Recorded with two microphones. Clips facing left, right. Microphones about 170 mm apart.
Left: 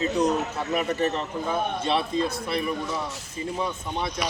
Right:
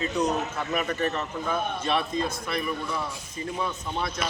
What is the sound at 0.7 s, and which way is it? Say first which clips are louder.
A man's voice: left 3 dB; 25° left (ahead or behind).